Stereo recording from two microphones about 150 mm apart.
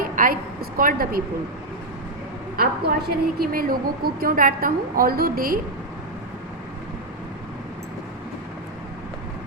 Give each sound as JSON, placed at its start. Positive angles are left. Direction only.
{"t": 0.0, "sound": "a woman's voice", "side_deg": -70}
{"t": 2.6, "sound": "a woman's voice", "side_deg": -90}